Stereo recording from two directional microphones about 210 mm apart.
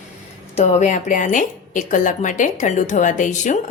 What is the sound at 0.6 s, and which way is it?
A woman's voice, 35° left (ahead or behind).